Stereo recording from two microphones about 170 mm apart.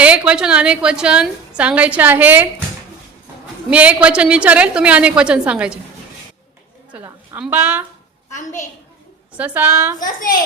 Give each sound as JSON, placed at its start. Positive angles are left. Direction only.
{"t": 0.0, "sound": "a woman's voice", "side_deg": -5}
{"t": 3.7, "sound": "a woman's voice", "side_deg": -10}
{"t": 6.9, "sound": "a woman's voice", "side_deg": -10}
{"t": 9.3, "sound": "a woman's voice", "side_deg": -10}
{"t": 10.2, "sound": "a woman's voice", "side_deg": 55}